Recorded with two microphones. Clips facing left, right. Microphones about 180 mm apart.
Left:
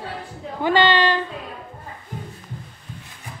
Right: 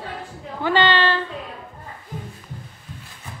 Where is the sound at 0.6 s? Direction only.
15° left (ahead or behind).